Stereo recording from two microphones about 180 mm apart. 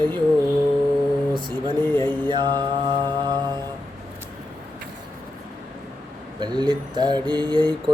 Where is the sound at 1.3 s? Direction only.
25° right (ahead or behind).